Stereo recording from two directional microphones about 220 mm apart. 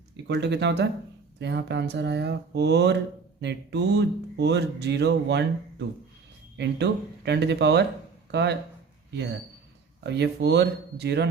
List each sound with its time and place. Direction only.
0.3 s speech: 50° right (ahead or behind)
6.6 s speech: 50° right (ahead or behind)
10.0 s speech: 50° right (ahead or behind)